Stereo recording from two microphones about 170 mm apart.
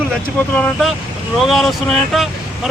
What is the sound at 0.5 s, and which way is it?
Speech, 10° left (ahead or behind).